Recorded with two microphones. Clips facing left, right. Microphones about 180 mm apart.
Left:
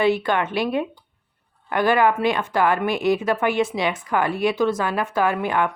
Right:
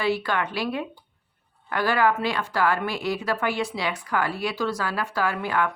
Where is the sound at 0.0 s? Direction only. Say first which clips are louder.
Left 5 dB; 20° left (ahead or behind).